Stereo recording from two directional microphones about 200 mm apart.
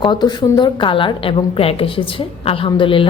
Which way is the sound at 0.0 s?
20° left (ahead or behind).